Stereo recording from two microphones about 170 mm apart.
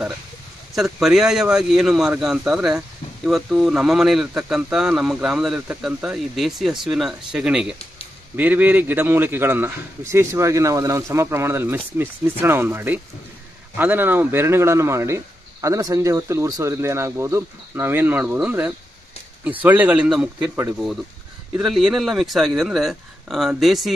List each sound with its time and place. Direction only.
0.7 s speech: centre (ahead or behind)
21.5 s speech: 5° right (ahead or behind)